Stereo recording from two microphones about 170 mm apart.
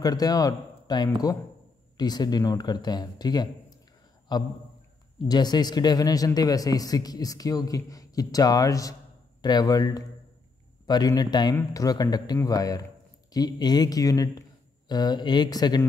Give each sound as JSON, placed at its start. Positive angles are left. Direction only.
{"t": 0.0, "sound": "a man's voice", "side_deg": 20}